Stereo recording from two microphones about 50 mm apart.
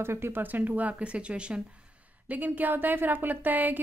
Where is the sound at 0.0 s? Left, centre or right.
Right.